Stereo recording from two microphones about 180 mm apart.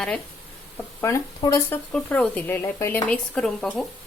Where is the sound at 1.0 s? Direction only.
15° left (ahead or behind).